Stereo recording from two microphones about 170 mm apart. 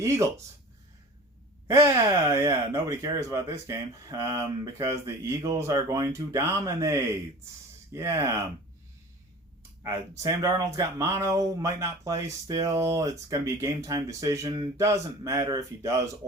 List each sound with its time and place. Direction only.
0.0 s speech: 15° right (ahead or behind)
1.6 s speech: 20° right (ahead or behind)
9.8 s speech: 20° right (ahead or behind)